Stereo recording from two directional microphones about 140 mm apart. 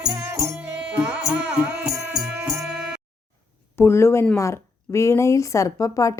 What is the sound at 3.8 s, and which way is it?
Speech, 20° left (ahead or behind).